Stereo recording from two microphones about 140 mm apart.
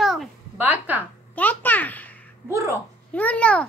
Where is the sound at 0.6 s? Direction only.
10° right (ahead or behind).